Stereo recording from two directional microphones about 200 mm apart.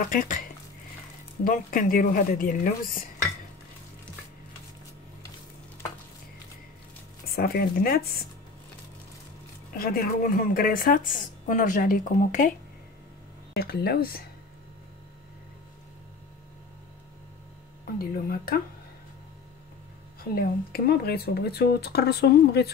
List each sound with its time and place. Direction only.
0.1 s speech: 45° left (ahead or behind)
1.4 s speech: 40° left (ahead or behind)
7.3 s speech: 50° left (ahead or behind)
9.8 s speech: 45° left (ahead or behind)
13.6 s speech: 50° left (ahead or behind)
17.8 s speech: 45° left (ahead or behind)
20.3 s speech: 50° left (ahead or behind)